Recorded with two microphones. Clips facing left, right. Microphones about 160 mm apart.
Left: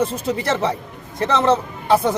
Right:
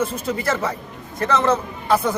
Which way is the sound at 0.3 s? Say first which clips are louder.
Left 2 dB; 25° left (ahead or behind).